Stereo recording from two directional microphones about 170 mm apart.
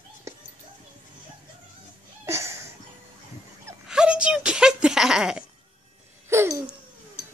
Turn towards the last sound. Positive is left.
turn(degrees=-15)  # may be behind; listen again after turning